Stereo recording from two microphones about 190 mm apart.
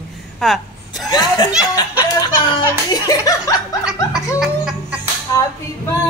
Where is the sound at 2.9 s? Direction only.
20° left (ahead or behind).